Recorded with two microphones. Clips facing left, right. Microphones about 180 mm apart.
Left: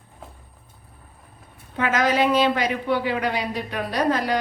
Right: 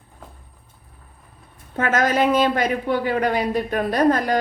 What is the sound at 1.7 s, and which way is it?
A woman's voice, 45° right (ahead or behind).